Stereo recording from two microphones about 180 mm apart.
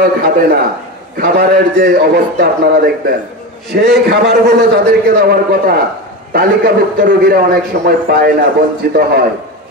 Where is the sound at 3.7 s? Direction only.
60° right (ahead or behind).